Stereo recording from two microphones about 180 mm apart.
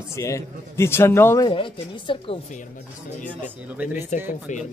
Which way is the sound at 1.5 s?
30° left (ahead or behind).